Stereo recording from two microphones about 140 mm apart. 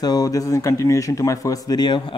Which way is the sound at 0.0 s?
25° left (ahead or behind).